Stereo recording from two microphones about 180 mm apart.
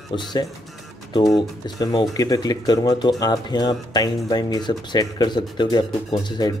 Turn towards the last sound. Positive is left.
turn(degrees=25)  # may be behind; listen again after turning